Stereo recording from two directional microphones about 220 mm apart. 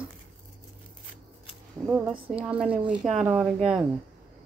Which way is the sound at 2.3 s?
5° right (ahead or behind).